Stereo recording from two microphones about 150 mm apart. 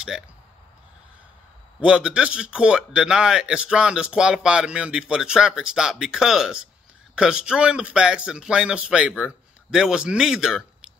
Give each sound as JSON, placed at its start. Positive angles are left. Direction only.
{"t": 1.8, "sound": "a man's voice", "side_deg": -5}